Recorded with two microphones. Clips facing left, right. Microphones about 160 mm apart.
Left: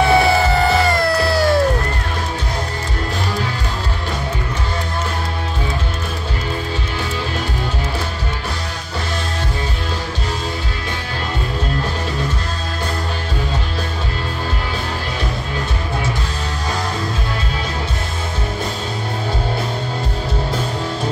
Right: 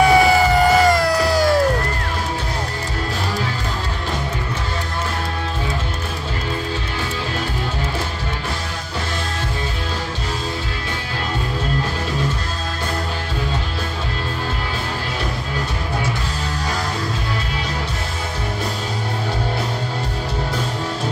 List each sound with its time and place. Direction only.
0.0 s music: 15° right (ahead or behind)